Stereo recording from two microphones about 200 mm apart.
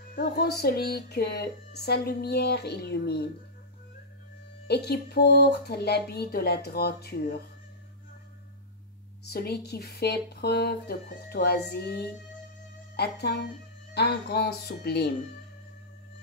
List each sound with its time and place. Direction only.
0.1 s speech: 50° left (ahead or behind)
4.6 s speech: 55° left (ahead or behind)
9.3 s speech: 55° left (ahead or behind)